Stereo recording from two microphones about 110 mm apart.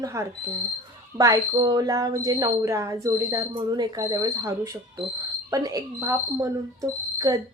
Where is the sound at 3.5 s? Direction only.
35° right (ahead or behind).